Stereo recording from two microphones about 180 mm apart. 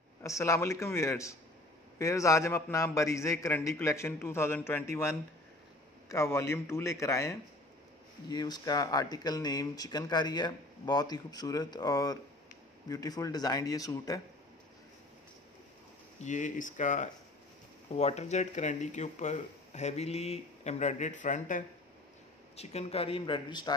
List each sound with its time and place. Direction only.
0.2 s a man's voice: 15° left (ahead or behind)
16.2 s speech: 45° left (ahead or behind); by 23.7 s 25° left (ahead or behind)